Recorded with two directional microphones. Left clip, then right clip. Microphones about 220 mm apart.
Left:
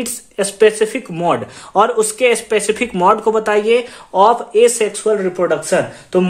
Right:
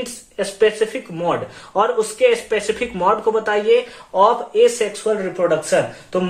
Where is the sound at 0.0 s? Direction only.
50° left (ahead or behind).